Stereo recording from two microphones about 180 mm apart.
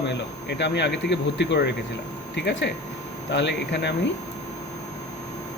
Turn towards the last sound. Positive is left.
turn(degrees=70)  # may be behind; listen again after turning